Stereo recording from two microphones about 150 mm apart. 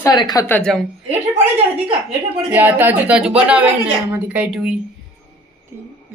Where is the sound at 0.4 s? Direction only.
10° left (ahead or behind).